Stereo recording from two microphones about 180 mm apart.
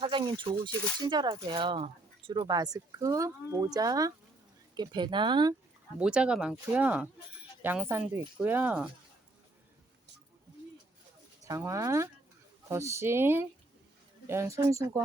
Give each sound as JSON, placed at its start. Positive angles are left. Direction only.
{"t": 0.0, "sound": "speech", "side_deg": -25}
{"t": 6.0, "sound": "speech", "side_deg": -5}
{"t": 11.4, "sound": "speech", "side_deg": -15}